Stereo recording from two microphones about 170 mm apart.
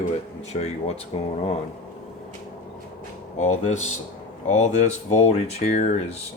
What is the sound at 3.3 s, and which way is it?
Speech, 40° left (ahead or behind).